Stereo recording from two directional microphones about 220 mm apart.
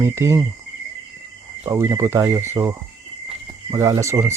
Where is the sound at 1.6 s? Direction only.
15° right (ahead or behind).